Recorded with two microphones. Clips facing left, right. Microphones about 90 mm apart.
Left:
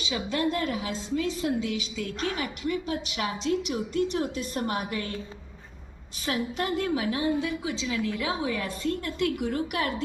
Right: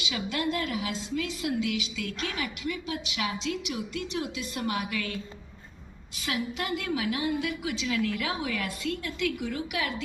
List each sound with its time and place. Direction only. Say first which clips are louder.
0.0 s a woman's voice: left 3 dB; 35° left (ahead or behind)
6.2 s a woman's voice: left 3 dB; 40° left (ahead or behind)